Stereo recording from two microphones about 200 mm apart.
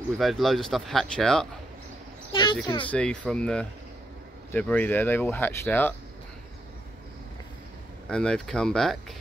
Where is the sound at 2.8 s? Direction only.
5° left (ahead or behind).